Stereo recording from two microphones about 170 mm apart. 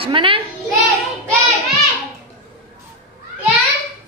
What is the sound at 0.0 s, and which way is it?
Speech, 30° right (ahead or behind).